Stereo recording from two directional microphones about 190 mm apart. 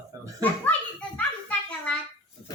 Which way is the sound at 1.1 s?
5° left (ahead or behind).